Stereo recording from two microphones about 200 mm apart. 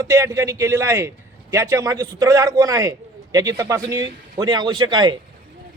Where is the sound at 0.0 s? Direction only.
15° right (ahead or behind).